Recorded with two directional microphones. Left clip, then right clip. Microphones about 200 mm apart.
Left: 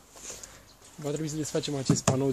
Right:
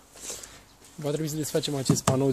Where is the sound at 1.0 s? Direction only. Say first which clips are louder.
Right 3 dB; 40° right (ahead or behind).